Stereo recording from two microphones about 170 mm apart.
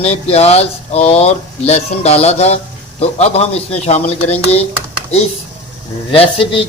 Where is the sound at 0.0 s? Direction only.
40° left (ahead or behind).